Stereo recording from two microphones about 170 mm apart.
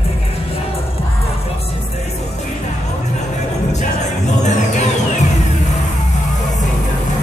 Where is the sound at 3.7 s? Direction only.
45° left (ahead or behind).